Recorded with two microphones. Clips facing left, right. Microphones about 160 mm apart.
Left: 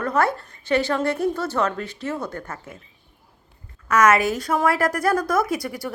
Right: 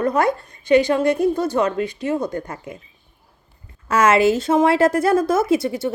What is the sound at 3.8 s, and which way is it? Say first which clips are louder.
Speech: right 3 dB; 30° right (ahead or behind).